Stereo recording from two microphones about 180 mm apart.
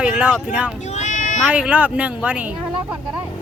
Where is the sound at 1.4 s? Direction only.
5° right (ahead or behind).